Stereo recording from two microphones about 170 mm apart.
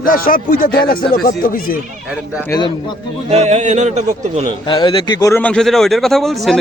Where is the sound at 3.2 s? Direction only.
40° right (ahead or behind).